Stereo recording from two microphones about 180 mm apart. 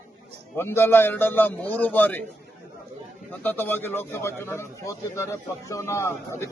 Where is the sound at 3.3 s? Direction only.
10° left (ahead or behind).